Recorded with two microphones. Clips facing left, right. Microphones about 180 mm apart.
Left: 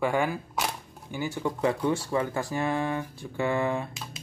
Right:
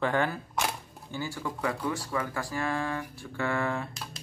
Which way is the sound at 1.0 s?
20° left (ahead or behind).